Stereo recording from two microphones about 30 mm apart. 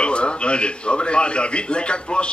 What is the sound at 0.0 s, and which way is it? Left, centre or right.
A man's voice, left.